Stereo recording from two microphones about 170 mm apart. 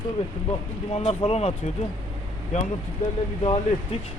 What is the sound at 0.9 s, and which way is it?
Speech, 35° left (ahead or behind).